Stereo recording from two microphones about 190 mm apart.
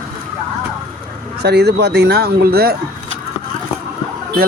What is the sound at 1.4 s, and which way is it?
A man's voice, 60° right (ahead or behind).